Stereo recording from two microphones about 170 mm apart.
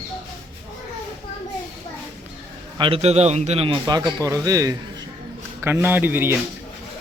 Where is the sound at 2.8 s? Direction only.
35° right (ahead or behind); by 6.3 s 10° right (ahead or behind).